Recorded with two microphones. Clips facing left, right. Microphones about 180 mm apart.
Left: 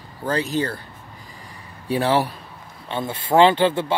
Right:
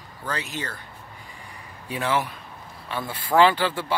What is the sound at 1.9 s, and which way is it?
A man's voice, 35° left (ahead or behind).